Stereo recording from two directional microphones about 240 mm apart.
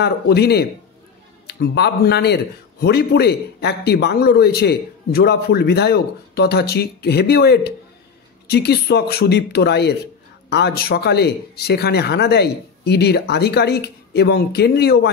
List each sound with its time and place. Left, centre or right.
0.0 s speech: left